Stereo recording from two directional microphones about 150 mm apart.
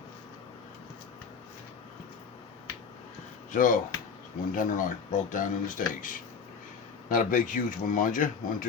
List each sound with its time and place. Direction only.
3.5 s speech: 60° left (ahead or behind)